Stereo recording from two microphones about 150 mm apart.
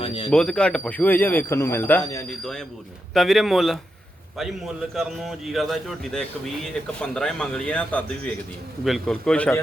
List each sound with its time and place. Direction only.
0.0 s a sound: 35° left (ahead or behind)
0.3 s speech: 5° left (ahead or behind); by 2.2 s 20° left (ahead or behind)
2.4 s speech: 5° left (ahead or behind)
4.9 s speech: centre (ahead or behind)